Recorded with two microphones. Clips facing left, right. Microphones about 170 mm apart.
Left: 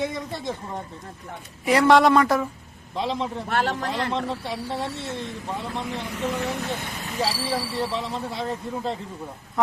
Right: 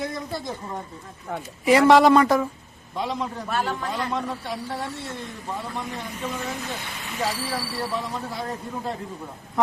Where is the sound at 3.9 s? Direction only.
25° left (ahead or behind).